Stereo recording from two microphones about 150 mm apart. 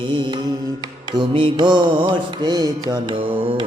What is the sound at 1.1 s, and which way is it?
Mantra, 35° right (ahead or behind).